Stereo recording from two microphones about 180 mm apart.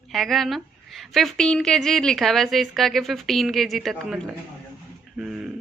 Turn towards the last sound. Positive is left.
turn(degrees=-5)  # may be behind; listen again after turning